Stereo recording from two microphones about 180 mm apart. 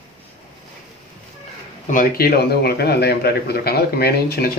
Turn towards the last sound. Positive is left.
turn(degrees=60)  # may be behind; listen again after turning